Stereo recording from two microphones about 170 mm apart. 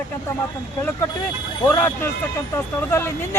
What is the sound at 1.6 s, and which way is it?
Speech, 10° left (ahead or behind).